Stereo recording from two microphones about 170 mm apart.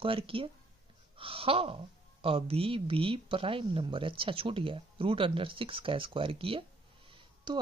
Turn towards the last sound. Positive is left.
turn(degrees=-25)  # may be behind; listen again after turning